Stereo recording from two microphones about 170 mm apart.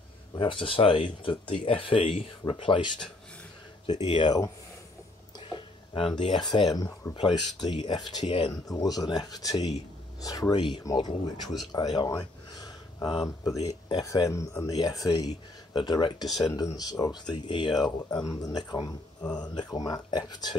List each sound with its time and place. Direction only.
0.4 s speech: 30° left (ahead or behind)
5.5 s speech: 30° left (ahead or behind)
11.4 s speech: centre (ahead or behind)
11.7 s speech: 25° left (ahead or behind)